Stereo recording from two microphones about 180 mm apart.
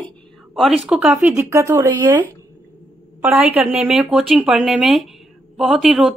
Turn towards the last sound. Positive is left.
turn(degrees=0)  # may be behind; listen again after turning